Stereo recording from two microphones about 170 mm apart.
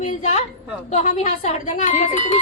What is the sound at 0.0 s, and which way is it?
A woman's voice, 45° left (ahead or behind).